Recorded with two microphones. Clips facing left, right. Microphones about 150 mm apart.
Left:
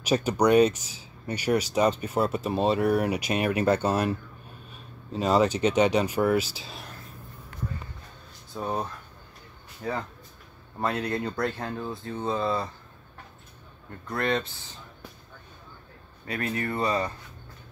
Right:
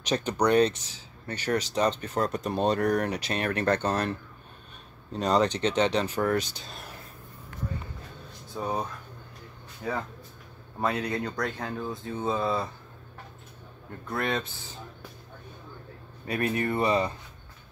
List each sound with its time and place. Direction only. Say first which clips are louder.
0.0 s speech: left 3 dB; 10° left (ahead or behind)
8.5 s speech: even; centre (ahead or behind)
14.0 s speech: left 2 dB; 5° right (ahead or behind)
16.3 s speech: right 3 dB; 20° right (ahead or behind)